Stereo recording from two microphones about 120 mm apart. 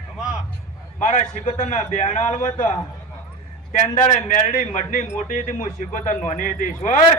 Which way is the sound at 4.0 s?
90° left.